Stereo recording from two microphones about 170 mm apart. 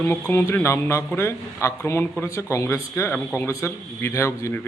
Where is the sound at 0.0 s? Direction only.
15° left (ahead or behind).